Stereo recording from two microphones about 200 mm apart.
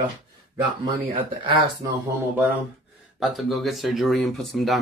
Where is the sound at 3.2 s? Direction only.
Centre (ahead or behind).